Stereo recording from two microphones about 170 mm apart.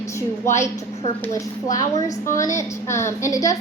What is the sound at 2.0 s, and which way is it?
A woman's voice, 20° left (ahead or behind).